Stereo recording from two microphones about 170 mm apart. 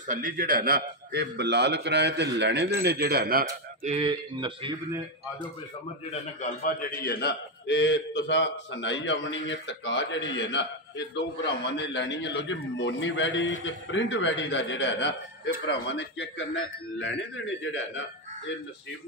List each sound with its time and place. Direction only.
0.0 s a man's voice: 50° right (ahead or behind)
3.8 s a man's voice: 40° right (ahead or behind)
6.0 s a man's voice: 50° left (ahead or behind); by 16.4 s 90° left